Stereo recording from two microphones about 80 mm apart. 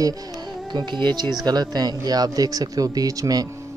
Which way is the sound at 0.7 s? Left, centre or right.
Right.